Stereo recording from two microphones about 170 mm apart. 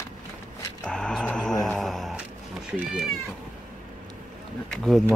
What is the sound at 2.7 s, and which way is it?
Speech, 5° right (ahead or behind).